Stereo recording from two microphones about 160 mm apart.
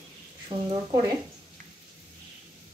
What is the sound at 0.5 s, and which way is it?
Speech, 30° right (ahead or behind).